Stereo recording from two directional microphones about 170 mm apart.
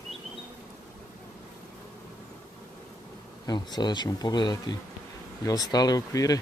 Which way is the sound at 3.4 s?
25° left (ahead or behind).